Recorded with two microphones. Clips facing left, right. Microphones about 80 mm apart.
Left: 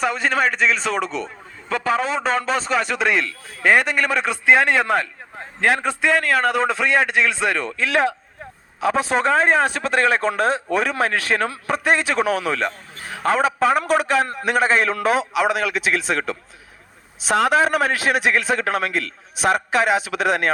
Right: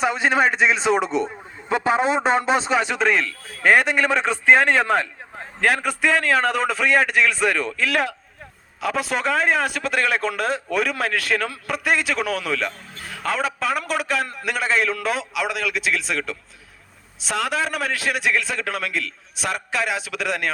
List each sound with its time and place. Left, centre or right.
0.0 s a man's voice: centre
2.7 s a man's voice: centre
5.6 s a man's voice: left
8.8 s a man's voice: left